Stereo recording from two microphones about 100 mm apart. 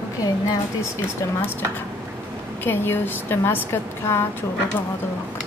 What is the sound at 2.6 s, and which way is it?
A woman's voice, 20° left (ahead or behind).